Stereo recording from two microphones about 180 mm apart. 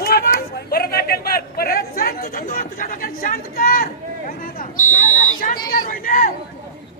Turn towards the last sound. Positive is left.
turn(degrees=50)  # may be behind; listen again after turning